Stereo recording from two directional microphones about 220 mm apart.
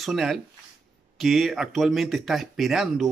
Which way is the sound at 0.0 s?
Centre (ahead or behind).